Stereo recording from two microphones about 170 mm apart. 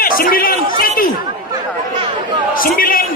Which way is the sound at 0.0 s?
55° left (ahead or behind).